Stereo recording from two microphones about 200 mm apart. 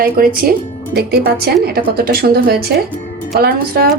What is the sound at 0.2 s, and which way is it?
A woman's voice, 50° right (ahead or behind).